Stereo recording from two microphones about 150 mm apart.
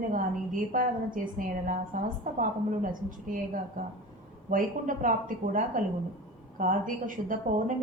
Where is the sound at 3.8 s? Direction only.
65° right (ahead or behind).